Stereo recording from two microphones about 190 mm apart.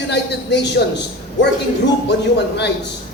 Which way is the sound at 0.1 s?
65° left (ahead or behind).